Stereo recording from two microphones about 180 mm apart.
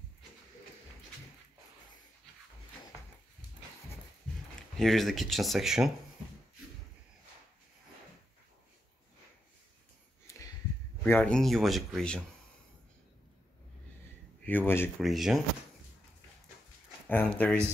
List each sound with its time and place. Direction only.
4.6 s speech: centre (ahead or behind)
10.2 s a sound: 15° left (ahead or behind)
11.1 s speech: 10° left (ahead or behind)
14.4 s speech: 10° left (ahead or behind)
15.0 s speech: centre (ahead or behind)
17.1 s speech: 10° left (ahead or behind)